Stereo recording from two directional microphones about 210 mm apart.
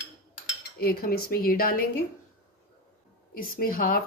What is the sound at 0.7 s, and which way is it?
Speech, 45° left (ahead or behind).